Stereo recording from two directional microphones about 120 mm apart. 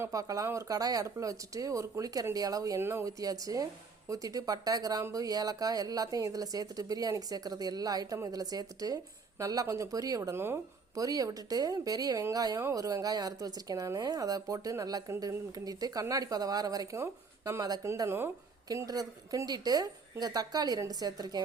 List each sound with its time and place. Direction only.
0.0 s speech: 30° right (ahead or behind)